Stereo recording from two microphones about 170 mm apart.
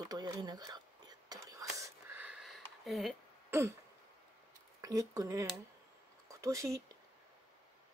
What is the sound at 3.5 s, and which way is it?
Throat clearing, 15° right (ahead or behind).